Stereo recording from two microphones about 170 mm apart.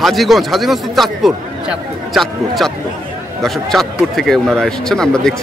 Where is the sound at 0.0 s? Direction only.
Centre (ahead or behind).